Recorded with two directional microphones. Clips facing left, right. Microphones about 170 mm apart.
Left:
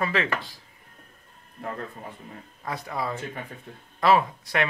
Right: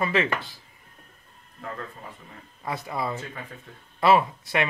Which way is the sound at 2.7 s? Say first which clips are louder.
Right 1 dB; 5° right (ahead or behind).